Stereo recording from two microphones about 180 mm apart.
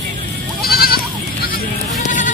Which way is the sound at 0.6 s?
55° left (ahead or behind).